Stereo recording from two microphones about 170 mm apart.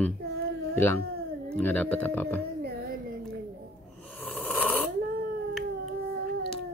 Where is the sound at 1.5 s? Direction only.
10° left (ahead or behind).